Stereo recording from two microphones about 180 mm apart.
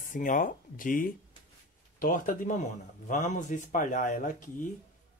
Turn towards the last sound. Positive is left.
turn(degrees=45)  # may be behind; listen again after turning